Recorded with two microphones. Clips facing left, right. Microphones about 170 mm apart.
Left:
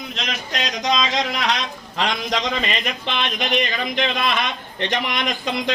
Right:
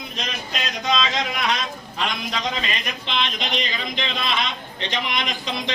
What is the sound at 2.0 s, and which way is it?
Speech, 85° left.